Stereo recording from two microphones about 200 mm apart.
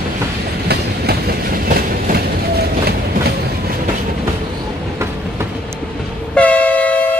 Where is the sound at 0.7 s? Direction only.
50° right (ahead or behind).